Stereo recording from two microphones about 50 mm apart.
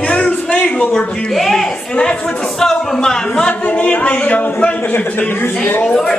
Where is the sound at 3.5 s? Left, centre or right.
Left.